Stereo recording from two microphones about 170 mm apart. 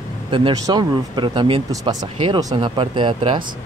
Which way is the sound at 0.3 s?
25° right (ahead or behind).